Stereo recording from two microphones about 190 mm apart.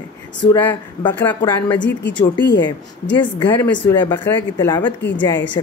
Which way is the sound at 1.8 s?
70° left (ahead or behind).